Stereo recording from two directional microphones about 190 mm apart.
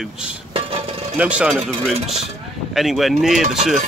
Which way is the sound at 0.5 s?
30° right (ahead or behind).